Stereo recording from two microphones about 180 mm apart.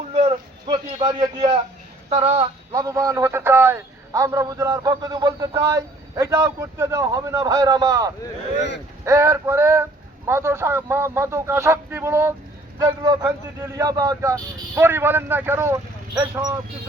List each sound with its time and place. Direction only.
0.2 s a sound: 30° right (ahead or behind)
2.0 s speech: 35° right (ahead or behind)
2.7 s a man's voice: 20° right (ahead or behind)